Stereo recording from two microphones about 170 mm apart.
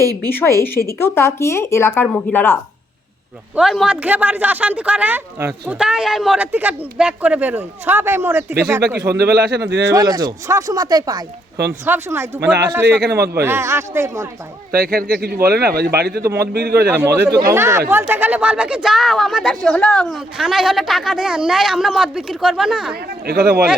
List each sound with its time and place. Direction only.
0.3 s speech: 15° left (ahead or behind)
3.5 s speech: centre (ahead or behind)
9.0 s speech: 75° right (ahead or behind)
9.8 s speech: 20° right (ahead or behind)
14.7 s speech: 60° right (ahead or behind)
17.4 s speech: 15° right (ahead or behind)
23.2 s speech: 65° right (ahead or behind)